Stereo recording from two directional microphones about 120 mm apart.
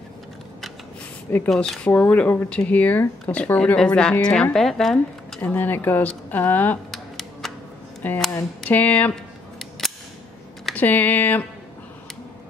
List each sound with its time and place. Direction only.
1.5 s speech: 5° left (ahead or behind)
1.9 s speech: 15° left (ahead or behind)
5.4 s speech: 15° left (ahead or behind)
6.9 s a sound: centre (ahead or behind)
8.3 s speech: 15° left (ahead or behind)
9.1 s camera: centre (ahead or behind)
10.6 s speech: 10° left (ahead or behind)